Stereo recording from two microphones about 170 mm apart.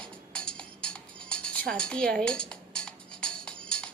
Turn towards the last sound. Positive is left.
turn(degrees=5)  # may be behind; listen again after turning